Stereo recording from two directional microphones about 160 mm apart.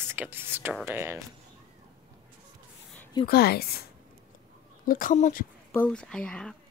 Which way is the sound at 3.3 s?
75° left (ahead or behind).